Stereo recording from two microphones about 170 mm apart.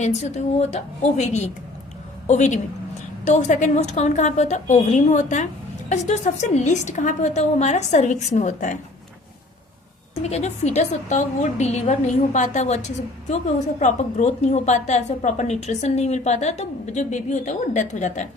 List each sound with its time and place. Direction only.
0.0 s a woman's voice: 45° left (ahead or behind)
10.2 s a woman's voice: 40° left (ahead or behind)